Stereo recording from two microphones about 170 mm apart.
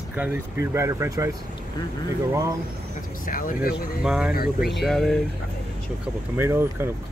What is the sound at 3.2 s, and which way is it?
Speech, 55° left (ahead or behind).